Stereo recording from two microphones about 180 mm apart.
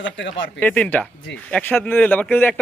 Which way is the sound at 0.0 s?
85° left.